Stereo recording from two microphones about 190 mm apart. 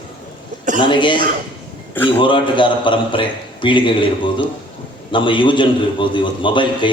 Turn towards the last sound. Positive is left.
turn(degrees=25)  # may be behind; listen again after turning